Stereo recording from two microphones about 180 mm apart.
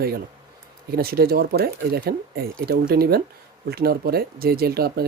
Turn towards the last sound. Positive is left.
turn(degrees=-60)  # may be behind; listen again after turning